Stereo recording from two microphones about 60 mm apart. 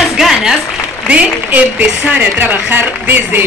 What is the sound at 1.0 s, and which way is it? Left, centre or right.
A woman's voice, right.